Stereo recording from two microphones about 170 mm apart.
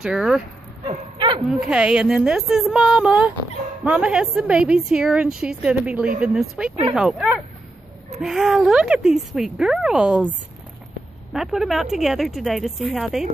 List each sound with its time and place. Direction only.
0.0 s a woman's voice: 5° right (ahead or behind)
0.8 s bow-wow: 30° right (ahead or behind)
1.4 s a woman's voice: 5° right (ahead or behind)
11.3 s a woman's voice: centre (ahead or behind)